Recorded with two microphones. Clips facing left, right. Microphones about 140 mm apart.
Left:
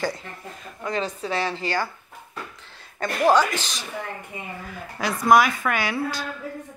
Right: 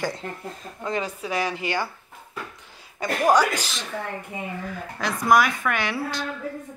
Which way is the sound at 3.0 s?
10° right (ahead or behind).